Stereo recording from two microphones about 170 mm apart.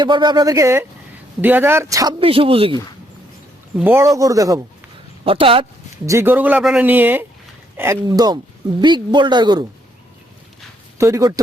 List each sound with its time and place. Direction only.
0.0 s speech: 25° right (ahead or behind)
3.8 s speech: 15° right (ahead or behind)
5.2 s speech: 30° right (ahead or behind)
6.1 s speech: 15° right (ahead or behind)
10.9 s speech: 15° right (ahead or behind)